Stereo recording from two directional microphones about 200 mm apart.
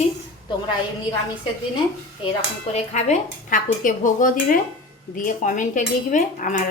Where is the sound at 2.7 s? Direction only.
35° left (ahead or behind).